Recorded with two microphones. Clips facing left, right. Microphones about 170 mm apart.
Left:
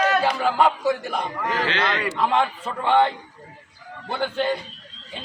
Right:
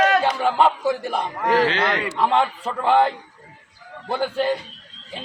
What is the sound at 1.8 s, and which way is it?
Speech, 20° right (ahead or behind).